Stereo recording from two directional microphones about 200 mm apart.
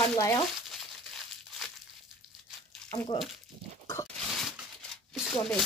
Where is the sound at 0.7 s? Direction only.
Centre (ahead or behind).